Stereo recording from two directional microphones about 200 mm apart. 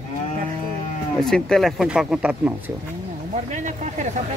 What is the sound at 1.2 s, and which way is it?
Speech, 5° left (ahead or behind).